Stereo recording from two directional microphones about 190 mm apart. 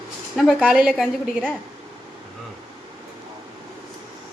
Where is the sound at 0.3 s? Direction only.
5° right (ahead or behind).